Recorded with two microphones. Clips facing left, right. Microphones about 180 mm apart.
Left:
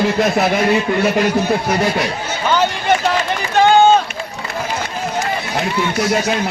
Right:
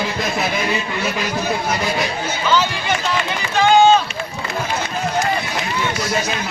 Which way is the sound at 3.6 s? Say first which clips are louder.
Left 2 dB; 55° left (ahead or behind).